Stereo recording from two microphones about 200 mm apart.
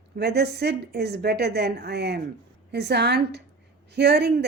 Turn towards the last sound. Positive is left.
turn(degrees=-55)  # may be behind; listen again after turning